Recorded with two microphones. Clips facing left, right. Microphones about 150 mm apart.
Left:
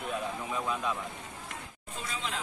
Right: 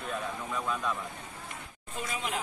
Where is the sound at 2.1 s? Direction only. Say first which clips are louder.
Right 2 dB; 15° right (ahead or behind).